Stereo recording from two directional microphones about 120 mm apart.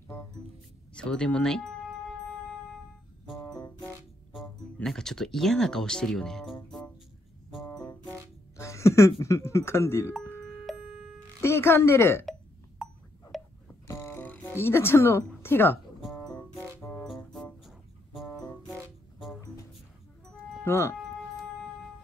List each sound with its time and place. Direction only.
0.9 s speech: 10° left (ahead or behind)
3.3 s music: centre (ahead or behind)
4.8 s speech: 5° left (ahead or behind)
7.7 s music: 35° left (ahead or behind)
8.5 s speech: 25° left (ahead or behind)
10.7 s music: centre (ahead or behind)
11.4 s speech: 20° left (ahead or behind)
12.8 s a sound: centre (ahead or behind)
13.3 s music: centre (ahead or behind)
13.8 s music: 20° left (ahead or behind)
17.0 s music: centre (ahead or behind)
19.4 s music: 30° left (ahead or behind)
20.2 s music: 5° left (ahead or behind)
20.6 s speech: 20° left (ahead or behind)